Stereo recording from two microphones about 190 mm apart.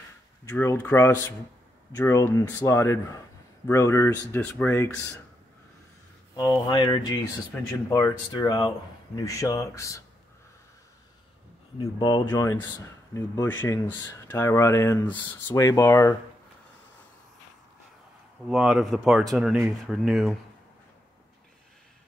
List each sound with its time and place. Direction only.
0.5 s speech: 10° left (ahead or behind)
6.3 s speech: 25° left (ahead or behind)
7.5 s speech: 5° left (ahead or behind)
7.9 s speech: 20° left (ahead or behind)
12.3 s speech: 15° left (ahead or behind)
18.5 s speech: 5° right (ahead or behind)